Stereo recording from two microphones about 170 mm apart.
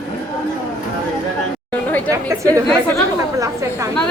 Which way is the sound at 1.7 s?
10° left (ahead or behind).